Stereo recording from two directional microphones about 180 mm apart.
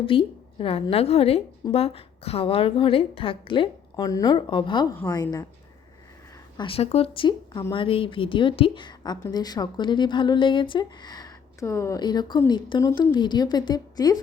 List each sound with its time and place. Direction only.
0.0 s a woman's voice: 30° left (ahead or behind)
6.6 s speech: 30° left (ahead or behind)